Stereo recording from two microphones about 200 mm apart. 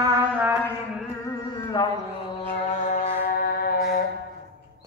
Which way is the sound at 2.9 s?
40° left (ahead or behind).